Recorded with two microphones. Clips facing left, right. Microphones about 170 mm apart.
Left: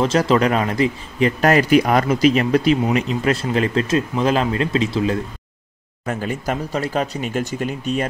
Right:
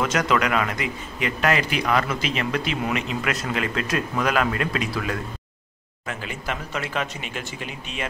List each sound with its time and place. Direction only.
0.0 s speech: 30° left (ahead or behind)
6.0 s speech: 40° left (ahead or behind)